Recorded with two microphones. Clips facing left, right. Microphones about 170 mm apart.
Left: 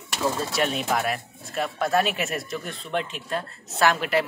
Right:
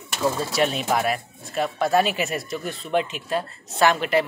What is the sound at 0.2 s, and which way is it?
Speech, centre (ahead or behind).